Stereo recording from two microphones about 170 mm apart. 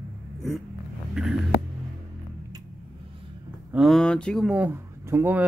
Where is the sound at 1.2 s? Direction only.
5° right (ahead or behind).